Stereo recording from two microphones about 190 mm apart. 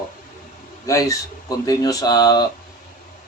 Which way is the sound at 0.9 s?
15° left (ahead or behind).